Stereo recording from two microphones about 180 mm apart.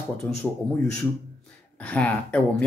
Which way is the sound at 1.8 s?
10° left (ahead or behind).